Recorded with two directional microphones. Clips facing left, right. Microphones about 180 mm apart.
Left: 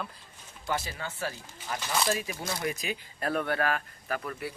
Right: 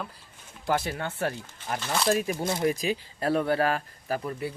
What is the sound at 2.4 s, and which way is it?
Speech, 30° right (ahead or behind).